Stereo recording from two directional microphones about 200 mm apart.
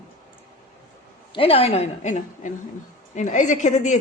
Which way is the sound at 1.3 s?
25° left (ahead or behind).